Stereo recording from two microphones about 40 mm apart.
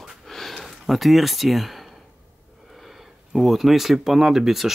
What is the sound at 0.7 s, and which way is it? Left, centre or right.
Speech, centre.